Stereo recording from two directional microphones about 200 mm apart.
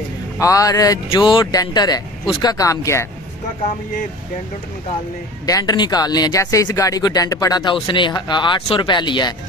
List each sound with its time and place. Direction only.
0.4 s speech: 15° left (ahead or behind)
5.5 s speech: 20° left (ahead or behind)